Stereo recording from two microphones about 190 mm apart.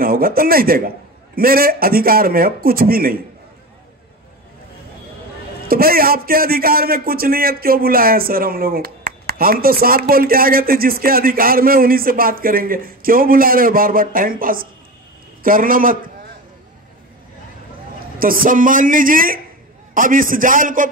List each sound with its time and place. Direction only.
0.0 s a man's voice: 50° right (ahead or behind)
5.7 s a man's voice: 50° right (ahead or behind)
18.2 s a man's voice: 50° right (ahead or behind)